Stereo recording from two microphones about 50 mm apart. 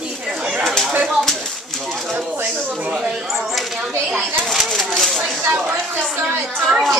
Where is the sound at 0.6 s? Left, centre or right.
Centre.